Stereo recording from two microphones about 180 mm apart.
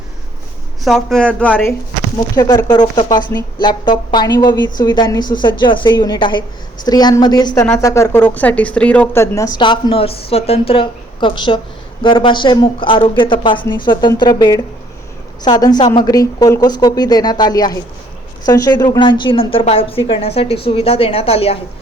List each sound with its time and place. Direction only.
0.9 s speech: centre (ahead or behind)
2.3 s a woman's voice: 20° left (ahead or behind)